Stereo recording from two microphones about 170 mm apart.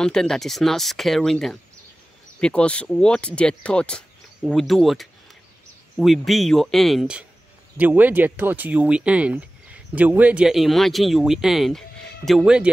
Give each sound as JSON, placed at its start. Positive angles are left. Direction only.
{"t": 0.0, "sound": "speech", "side_deg": 5}